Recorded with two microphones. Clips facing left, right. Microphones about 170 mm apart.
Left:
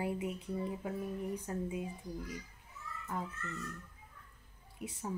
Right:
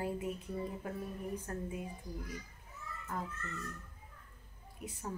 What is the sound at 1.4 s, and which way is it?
Speech, 15° left (ahead or behind).